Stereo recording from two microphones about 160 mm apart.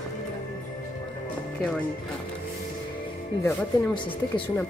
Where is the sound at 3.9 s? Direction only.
30° left (ahead or behind).